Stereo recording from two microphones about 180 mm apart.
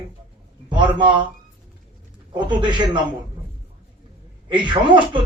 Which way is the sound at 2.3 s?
25° right (ahead or behind).